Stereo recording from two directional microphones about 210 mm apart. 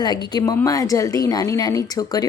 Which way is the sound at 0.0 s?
20° left (ahead or behind).